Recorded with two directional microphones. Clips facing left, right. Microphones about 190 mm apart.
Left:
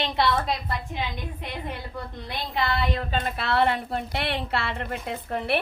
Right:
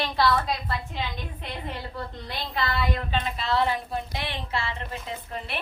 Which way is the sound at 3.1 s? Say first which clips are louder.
Left 1 dB; 55° left (ahead or behind).